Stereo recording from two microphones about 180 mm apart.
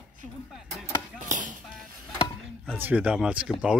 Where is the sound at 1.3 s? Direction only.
45° right (ahead or behind).